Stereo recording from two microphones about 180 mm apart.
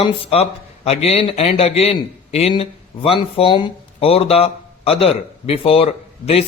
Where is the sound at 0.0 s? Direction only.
35° left (ahead or behind).